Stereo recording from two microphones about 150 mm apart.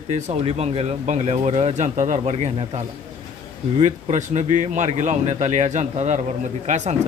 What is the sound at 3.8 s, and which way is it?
Speech, 50° right (ahead or behind).